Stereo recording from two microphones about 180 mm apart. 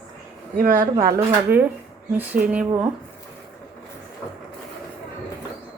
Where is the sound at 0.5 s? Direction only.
50° right (ahead or behind).